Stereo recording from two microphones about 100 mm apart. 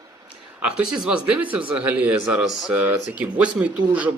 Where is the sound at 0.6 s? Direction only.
5° right (ahead or behind).